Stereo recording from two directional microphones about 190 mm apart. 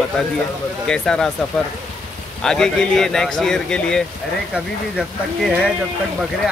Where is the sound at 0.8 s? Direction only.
5° left (ahead or behind).